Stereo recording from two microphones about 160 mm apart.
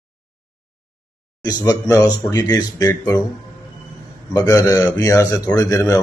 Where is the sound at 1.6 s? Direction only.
20° left (ahead or behind).